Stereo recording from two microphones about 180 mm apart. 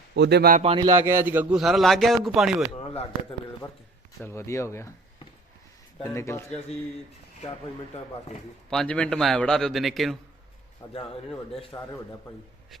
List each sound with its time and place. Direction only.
0.2 s speech: 65° right (ahead or behind)
0.6 s speech: 30° right (ahead or behind)
0.9 s a man's voice: 15° right (ahead or behind)
2.7 s a sound: 35° left (ahead or behind)
4.2 s speech: 15° left (ahead or behind)
6.0 s speech: 15° left (ahead or behind)
8.7 s a man's voice: 5° left (ahead or behind)
10.9 s speech: 30° left (ahead or behind)